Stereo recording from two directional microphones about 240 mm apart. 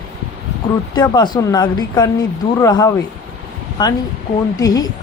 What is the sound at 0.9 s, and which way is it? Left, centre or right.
Speech, centre.